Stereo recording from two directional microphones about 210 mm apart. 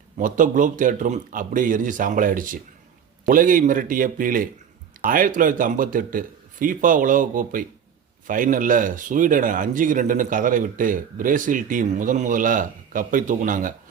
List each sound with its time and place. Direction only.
0.2 s speech: 40° right (ahead or behind)